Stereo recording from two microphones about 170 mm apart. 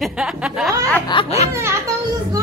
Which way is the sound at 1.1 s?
35° left (ahead or behind).